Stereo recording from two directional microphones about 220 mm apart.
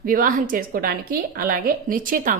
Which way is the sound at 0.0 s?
40° right (ahead or behind).